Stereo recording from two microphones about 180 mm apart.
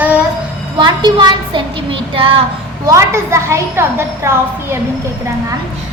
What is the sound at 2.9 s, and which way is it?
A woman's voice, 15° right (ahead or behind).